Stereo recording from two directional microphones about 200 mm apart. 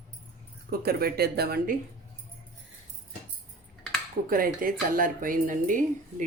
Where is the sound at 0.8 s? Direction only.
50° right (ahead or behind).